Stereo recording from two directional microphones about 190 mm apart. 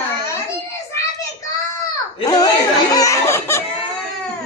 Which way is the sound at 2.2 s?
20° left (ahead or behind).